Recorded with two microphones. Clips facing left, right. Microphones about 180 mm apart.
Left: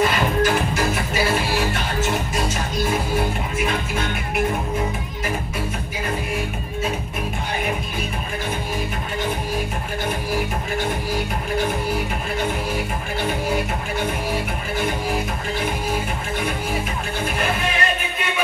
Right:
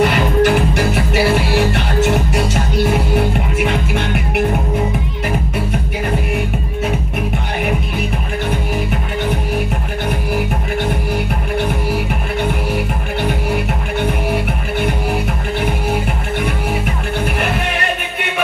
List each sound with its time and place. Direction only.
0.0 s music: 70° right (ahead or behind)